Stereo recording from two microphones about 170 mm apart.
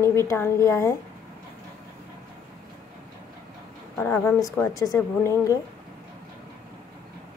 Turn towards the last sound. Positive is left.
turn(degrees=15)  # may be behind; listen again after turning